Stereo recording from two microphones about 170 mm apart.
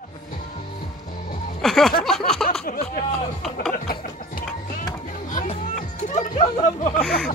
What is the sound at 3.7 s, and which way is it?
Music, 55° left (ahead or behind).